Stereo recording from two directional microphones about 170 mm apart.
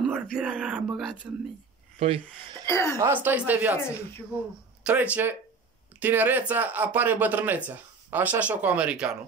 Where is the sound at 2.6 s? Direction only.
15° left (ahead or behind).